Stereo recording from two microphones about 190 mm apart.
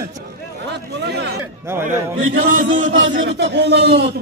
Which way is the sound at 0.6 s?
65° right (ahead or behind).